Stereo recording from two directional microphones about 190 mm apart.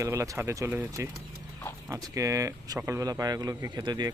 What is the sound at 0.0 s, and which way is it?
A man's voice, 15° right (ahead or behind).